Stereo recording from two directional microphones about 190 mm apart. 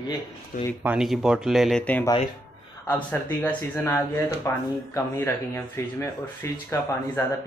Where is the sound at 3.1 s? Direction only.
10° left (ahead or behind).